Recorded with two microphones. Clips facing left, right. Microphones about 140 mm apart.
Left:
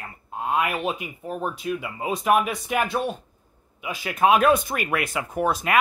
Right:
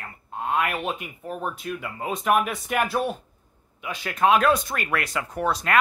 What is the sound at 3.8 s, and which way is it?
A man's voice, 10° left (ahead or behind).